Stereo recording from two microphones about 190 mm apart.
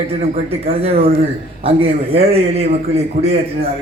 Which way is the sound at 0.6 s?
30° right (ahead or behind).